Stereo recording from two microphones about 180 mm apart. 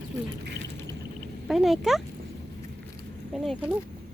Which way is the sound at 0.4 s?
70° right (ahead or behind).